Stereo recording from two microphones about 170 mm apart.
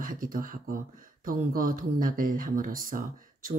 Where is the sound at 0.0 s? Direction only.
55° right (ahead or behind).